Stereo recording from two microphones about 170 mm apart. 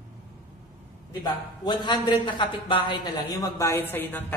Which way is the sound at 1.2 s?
25° left (ahead or behind).